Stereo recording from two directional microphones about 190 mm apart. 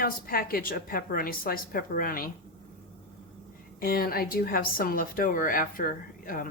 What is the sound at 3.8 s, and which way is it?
Speech, 50° left (ahead or behind).